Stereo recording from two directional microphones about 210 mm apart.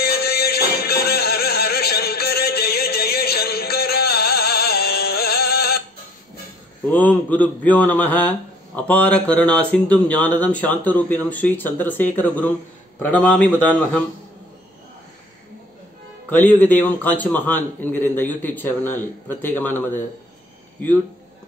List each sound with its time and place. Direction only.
0.0 s music: 50° left (ahead or behind)
6.9 s a man's voice: 10° left (ahead or behind)
16.3 s a man's voice: 10° left (ahead or behind)